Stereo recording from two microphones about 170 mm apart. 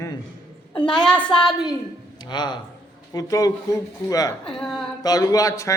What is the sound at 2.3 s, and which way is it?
A man's voice, 25° left (ahead or behind).